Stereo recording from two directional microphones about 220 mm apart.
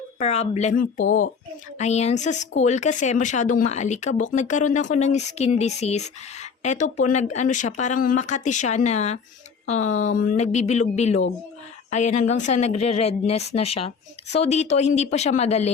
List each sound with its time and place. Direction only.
0.2 s a woman's voice: 30° left (ahead or behind)